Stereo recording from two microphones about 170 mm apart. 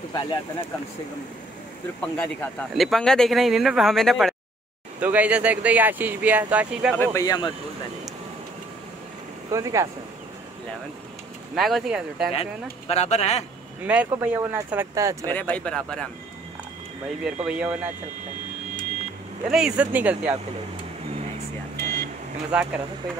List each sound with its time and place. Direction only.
0.1 s speech: 25° left (ahead or behind)
2.0 s speech: 5° left (ahead or behind)
7.0 s speech: 20° left (ahead or behind)
9.5 s speech: 20° right (ahead or behind)
11.5 s speech: centre (ahead or behind)
12.3 s speech: 35° left (ahead or behind)
13.8 s speech: 10° right (ahead or behind)
15.2 s speech: 10° left (ahead or behind)
17.5 s speech: 5° right (ahead or behind)
19.5 s speech: 5° right (ahead or behind)
22.5 s speech: 10° right (ahead or behind)